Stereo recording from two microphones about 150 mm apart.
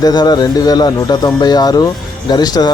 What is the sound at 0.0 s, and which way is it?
Speech, 25° left (ahead or behind).